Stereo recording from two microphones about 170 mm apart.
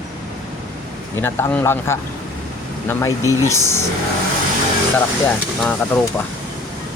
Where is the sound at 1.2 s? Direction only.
10° left (ahead or behind).